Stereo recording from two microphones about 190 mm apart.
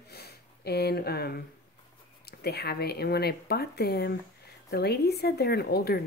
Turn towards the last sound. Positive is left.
turn(degrees=55)  # may be behind; listen again after turning